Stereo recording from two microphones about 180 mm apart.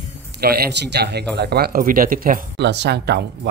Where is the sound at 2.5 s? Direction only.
70° right (ahead or behind).